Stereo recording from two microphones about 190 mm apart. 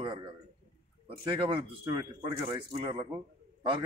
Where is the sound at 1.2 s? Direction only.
25° right (ahead or behind).